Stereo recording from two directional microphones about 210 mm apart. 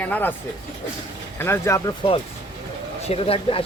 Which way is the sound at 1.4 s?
10° left (ahead or behind).